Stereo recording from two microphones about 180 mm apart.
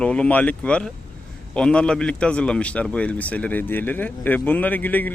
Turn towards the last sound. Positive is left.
turn(degrees=10)  # may be behind; listen again after turning